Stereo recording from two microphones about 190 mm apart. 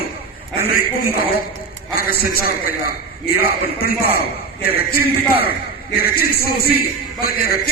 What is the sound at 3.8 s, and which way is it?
A man's voice, 50° left (ahead or behind).